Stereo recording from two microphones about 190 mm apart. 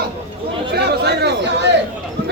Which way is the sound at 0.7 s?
60° right (ahead or behind).